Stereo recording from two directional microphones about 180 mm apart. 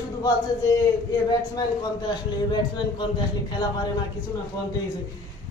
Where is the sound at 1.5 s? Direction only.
25° left (ahead or behind).